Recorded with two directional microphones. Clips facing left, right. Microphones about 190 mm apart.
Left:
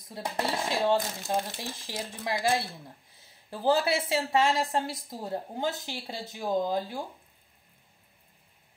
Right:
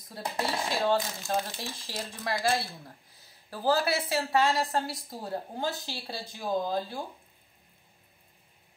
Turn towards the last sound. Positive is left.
turn(degrees=15)  # may be behind; listen again after turning